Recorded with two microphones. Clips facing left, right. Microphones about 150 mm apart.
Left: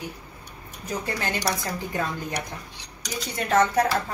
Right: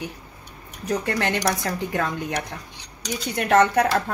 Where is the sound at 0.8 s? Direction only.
70° right (ahead or behind).